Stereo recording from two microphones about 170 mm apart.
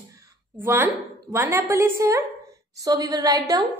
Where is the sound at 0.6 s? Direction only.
10° right (ahead or behind).